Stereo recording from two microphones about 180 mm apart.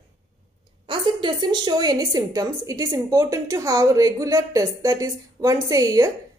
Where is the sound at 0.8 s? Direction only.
25° right (ahead or behind).